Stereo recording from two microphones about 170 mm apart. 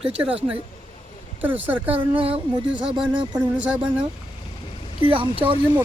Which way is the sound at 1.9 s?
35° right (ahead or behind).